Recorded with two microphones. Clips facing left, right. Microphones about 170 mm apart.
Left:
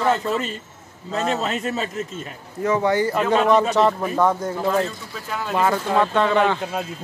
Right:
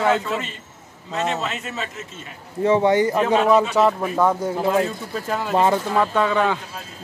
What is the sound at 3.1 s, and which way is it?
Speech, 5° right (ahead or behind).